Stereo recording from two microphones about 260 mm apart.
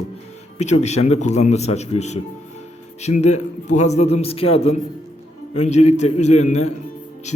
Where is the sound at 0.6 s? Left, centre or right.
Left.